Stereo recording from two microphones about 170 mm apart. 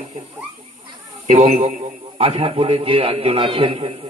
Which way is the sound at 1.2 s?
45° right (ahead or behind).